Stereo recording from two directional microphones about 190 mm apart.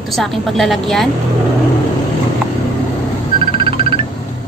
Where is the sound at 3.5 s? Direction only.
30° right (ahead or behind).